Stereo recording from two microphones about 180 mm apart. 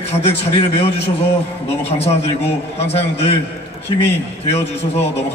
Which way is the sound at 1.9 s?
35° left (ahead or behind).